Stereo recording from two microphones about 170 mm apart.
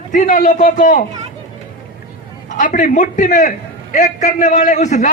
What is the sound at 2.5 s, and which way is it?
A man's voice, 50° left (ahead or behind).